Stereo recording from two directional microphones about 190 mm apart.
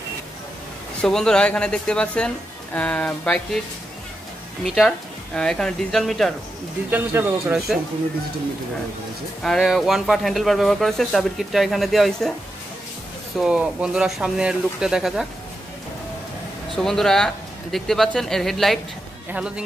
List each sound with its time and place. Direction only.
1.0 s speech: 5° left (ahead or behind)
4.6 s speech: centre (ahead or behind)
6.9 s speech: 10° right (ahead or behind)
9.4 s speech: centre (ahead or behind)
13.4 s speech: 5° right (ahead or behind)
16.7 s speech: centre (ahead or behind)